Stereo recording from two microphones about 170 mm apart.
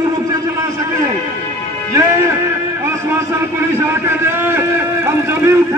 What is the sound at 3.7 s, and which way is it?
A man's voice, 15° right (ahead or behind).